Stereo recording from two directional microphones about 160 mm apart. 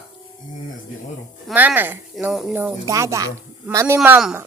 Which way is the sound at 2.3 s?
Centre (ahead or behind).